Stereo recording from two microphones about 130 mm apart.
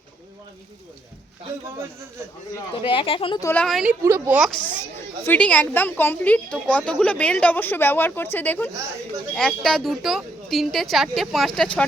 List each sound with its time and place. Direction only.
2.8 s a woman's voice: 40° left (ahead or behind)
3.5 s a woman's voice: 5° left (ahead or behind)
4.0 s a woman's voice: 20° right (ahead or behind)
4.4 s a woman's voice: centre (ahead or behind)
5.2 s a woman's voice: 10° left (ahead or behind)
9.3 s a woman's voice: 5° left (ahead or behind)